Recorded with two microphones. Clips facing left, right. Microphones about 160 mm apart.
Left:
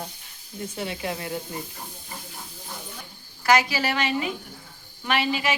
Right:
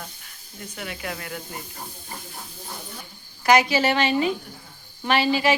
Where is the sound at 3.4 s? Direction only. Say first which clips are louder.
Right 3 dB; 20° right (ahead or behind).